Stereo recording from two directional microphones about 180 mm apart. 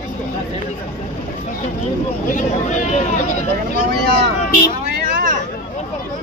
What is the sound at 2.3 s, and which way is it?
Speech, 45° left (ahead or behind).